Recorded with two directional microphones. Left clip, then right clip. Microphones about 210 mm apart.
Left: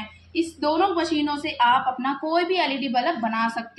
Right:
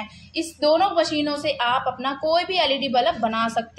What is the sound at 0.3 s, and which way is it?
A woman's voice, 40° right (ahead or behind).